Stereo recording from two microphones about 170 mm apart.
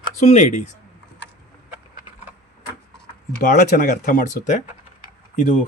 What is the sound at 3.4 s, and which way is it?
Speech, 50° left (ahead or behind).